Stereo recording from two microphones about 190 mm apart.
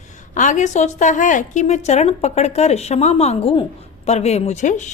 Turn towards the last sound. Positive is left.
turn(degrees=40)  # may be behind; listen again after turning